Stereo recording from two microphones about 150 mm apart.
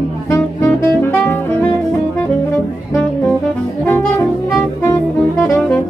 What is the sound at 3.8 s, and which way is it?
Saxophone, 15° left (ahead or behind).